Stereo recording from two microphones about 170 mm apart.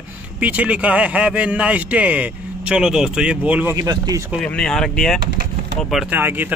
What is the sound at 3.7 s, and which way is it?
Speech, 20° right (ahead or behind).